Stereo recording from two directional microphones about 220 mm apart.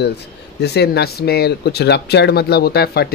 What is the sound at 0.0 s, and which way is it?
Speech, 50° left (ahead or behind).